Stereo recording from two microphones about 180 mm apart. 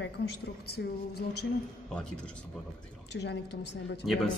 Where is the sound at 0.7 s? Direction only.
65° left (ahead or behind).